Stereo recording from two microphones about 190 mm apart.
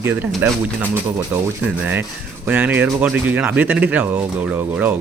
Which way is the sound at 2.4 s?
10° right (ahead or behind).